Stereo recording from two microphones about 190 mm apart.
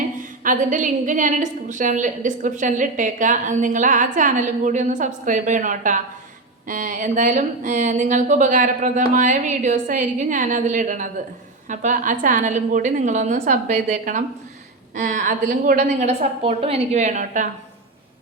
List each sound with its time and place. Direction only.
0.4 s a woman's voice: 45° right (ahead or behind)